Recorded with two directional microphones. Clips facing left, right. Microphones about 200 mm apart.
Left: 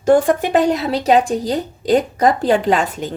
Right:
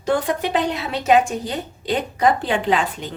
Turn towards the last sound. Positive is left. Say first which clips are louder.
# left 3 dB
turn(degrees=45)  # may be behind; listen again after turning